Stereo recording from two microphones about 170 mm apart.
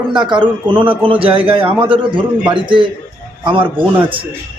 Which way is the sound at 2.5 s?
30° right (ahead or behind).